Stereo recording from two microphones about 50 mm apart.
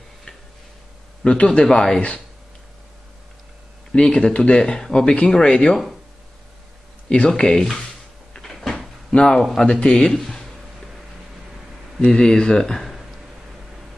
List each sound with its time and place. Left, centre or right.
1.2 s speech: left
3.9 s speech: centre
7.2 s speech: centre
8.3 s cupboard open or close: centre
9.1 s speech: left
9.4 s speech: centre
9.7 s speech: centre
12.0 s speech: centre